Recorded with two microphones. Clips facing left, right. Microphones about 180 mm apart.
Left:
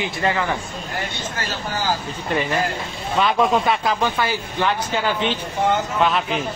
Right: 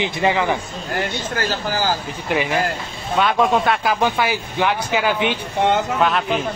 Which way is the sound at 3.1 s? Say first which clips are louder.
Right 1 dB; centre (ahead or behind).